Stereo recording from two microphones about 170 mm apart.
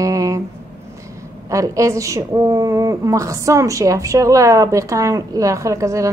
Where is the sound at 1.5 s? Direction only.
20° right (ahead or behind).